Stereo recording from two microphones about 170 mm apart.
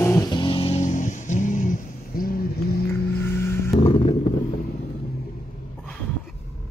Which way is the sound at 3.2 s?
15° left (ahead or behind).